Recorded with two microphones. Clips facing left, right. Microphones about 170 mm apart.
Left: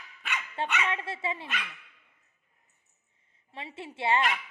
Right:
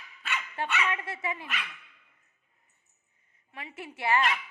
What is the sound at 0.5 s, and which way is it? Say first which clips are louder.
A woman's voice: left 1 dB; 25° left (ahead or behind).